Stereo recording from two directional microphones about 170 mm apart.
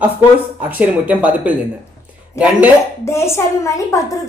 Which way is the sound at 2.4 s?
15° left (ahead or behind).